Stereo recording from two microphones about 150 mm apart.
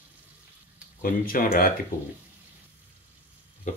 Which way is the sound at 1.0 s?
70° left (ahead or behind).